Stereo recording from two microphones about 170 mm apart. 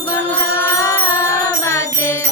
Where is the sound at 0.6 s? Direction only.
15° left (ahead or behind).